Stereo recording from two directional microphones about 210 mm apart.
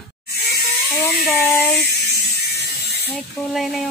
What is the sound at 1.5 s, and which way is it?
Electric toothbrush, 10° left (ahead or behind).